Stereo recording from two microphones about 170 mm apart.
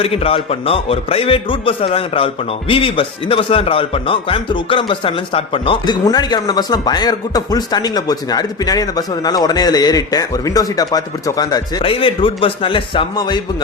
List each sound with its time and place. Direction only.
0.0 s a man's voice: 35° left (ahead or behind)